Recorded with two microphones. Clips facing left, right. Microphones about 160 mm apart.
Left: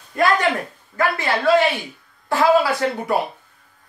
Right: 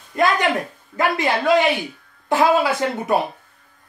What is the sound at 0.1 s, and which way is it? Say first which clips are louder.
Speech: even; 20° right (ahead or behind).